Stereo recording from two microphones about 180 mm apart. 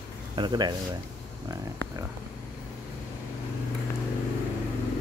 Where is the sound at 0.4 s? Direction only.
25° right (ahead or behind).